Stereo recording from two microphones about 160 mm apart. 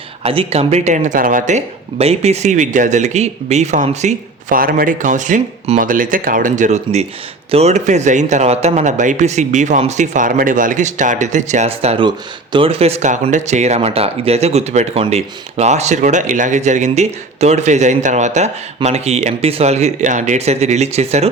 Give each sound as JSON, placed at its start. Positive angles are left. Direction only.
{"t": 0.2, "sound": "speech", "side_deg": -40}
{"t": 12.0, "sound": "speech", "side_deg": -30}